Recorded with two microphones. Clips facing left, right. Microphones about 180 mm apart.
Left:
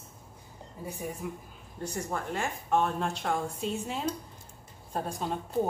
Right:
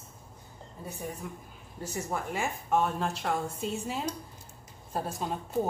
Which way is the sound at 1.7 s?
5° right (ahead or behind).